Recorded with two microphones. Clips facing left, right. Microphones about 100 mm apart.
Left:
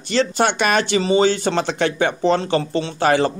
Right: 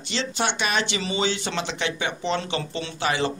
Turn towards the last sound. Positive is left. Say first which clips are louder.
# left 8 dB
turn(degrees=45)  # may be behind; listen again after turning